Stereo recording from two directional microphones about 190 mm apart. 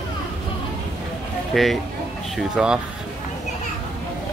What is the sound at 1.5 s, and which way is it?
Speech, centre (ahead or behind).